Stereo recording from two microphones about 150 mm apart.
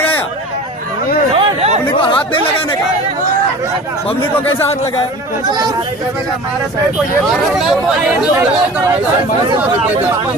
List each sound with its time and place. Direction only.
1.3 s chatter: 40° right (ahead or behind)
2.0 s chatter: 35° left (ahead or behind)
7.2 s speech: centre (ahead or behind)